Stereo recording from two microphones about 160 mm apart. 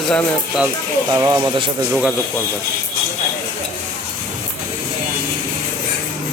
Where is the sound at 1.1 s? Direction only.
25° right (ahead or behind).